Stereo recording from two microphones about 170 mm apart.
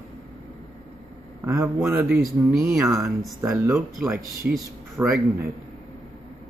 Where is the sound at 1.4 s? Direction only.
15° right (ahead or behind).